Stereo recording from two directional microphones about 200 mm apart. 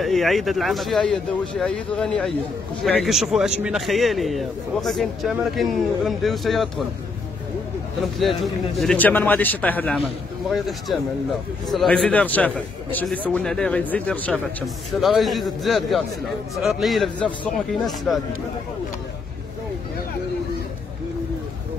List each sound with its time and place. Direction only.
0.0 s a man's voice: centre (ahead or behind)
8.0 s a man's voice: centre (ahead or behind)
11.7 s a man's voice: centre (ahead or behind)